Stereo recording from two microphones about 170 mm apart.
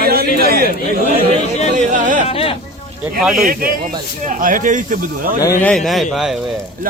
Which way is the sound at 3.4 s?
60° right (ahead or behind).